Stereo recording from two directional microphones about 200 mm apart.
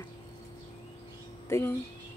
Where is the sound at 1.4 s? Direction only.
15° left (ahead or behind).